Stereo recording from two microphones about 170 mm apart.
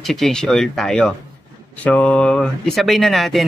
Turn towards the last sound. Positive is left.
turn(degrees=0)  # may be behind; listen again after turning